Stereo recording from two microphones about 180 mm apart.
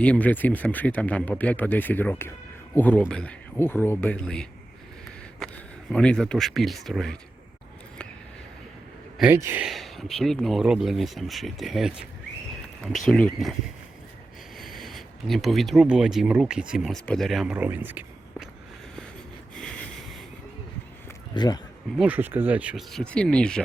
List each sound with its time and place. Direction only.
0.0 s speech: 10° left (ahead or behind)
5.9 s speech: 5° left (ahead or behind)
9.3 s speech: 15° right (ahead or behind)
9.6 s speech: centre (ahead or behind)
13.1 s speech: 5° left (ahead or behind)
14.6 s speech: centre (ahead or behind)
19.5 s a sound: 5° left (ahead or behind)
21.3 s speech: 25° left (ahead or behind)
21.9 s speech: 10° right (ahead or behind)